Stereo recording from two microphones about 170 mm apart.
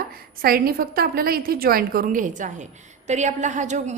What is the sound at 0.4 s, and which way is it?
A woman's voice, 60° right (ahead or behind).